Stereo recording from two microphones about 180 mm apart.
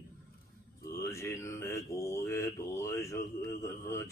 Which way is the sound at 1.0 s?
15° left (ahead or behind).